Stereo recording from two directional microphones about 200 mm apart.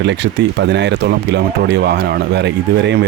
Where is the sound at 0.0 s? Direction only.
60° right (ahead or behind).